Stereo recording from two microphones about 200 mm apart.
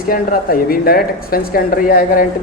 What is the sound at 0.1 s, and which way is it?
A man's voice, 45° left (ahead or behind).